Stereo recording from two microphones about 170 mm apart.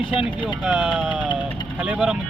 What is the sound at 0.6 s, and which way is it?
Speech, 5° right (ahead or behind).